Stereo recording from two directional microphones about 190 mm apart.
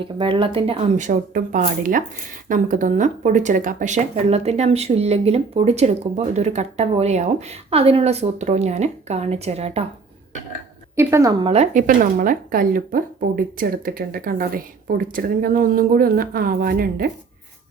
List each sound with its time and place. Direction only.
0.0 s speech: 25° right (ahead or behind)
1.0 s speech: 45° right (ahead or behind)
10.9 s speech: 15° right (ahead or behind); by 17.1 s 50° right (ahead or behind)